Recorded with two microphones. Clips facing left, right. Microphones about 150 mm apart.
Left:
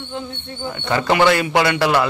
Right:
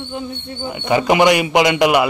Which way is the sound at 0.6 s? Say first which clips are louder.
Right 4 dB; 15° right (ahead or behind).